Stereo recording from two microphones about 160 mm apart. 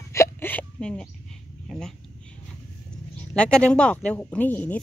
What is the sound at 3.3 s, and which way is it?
Speech, 5° left (ahead or behind).